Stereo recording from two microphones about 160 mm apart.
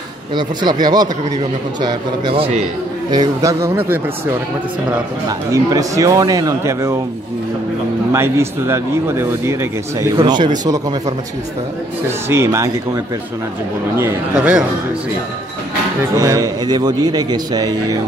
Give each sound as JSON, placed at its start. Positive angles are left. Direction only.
{"t": 0.3, "sound": "a man's voice", "side_deg": -25}
{"t": 3.1, "sound": "a man's voice", "side_deg": -25}
{"t": 5.5, "sound": "a man's voice", "side_deg": -20}
{"t": 8.1, "sound": "a man's voice", "side_deg": -15}
{"t": 12.3, "sound": "a man's voice", "side_deg": -15}
{"t": 14.3, "sound": "speech", "side_deg": -5}
{"t": 16.2, "sound": "a man's voice", "side_deg": -20}